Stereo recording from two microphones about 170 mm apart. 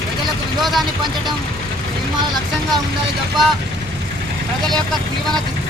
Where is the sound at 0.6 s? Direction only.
Centre (ahead or behind).